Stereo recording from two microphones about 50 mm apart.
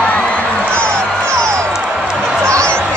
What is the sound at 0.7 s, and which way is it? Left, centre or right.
Music, centre.